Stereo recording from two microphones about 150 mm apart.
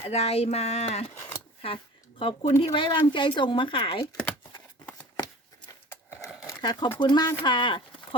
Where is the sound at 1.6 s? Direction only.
35° left (ahead or behind).